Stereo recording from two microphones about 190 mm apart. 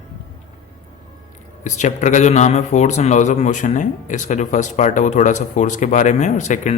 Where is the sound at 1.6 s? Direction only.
40° left (ahead or behind).